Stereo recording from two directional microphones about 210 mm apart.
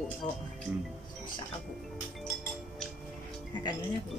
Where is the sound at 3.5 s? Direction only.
20° left (ahead or behind).